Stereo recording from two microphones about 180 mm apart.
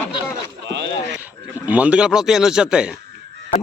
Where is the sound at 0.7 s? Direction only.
80° right.